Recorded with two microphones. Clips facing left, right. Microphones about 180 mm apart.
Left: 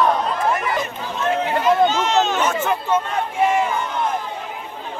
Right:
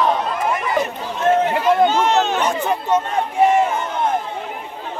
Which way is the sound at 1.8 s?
55° right (ahead or behind).